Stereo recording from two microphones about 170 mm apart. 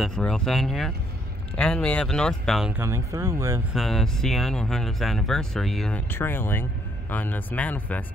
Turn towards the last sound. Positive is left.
turn(degrees=10)  # may be behind; listen again after turning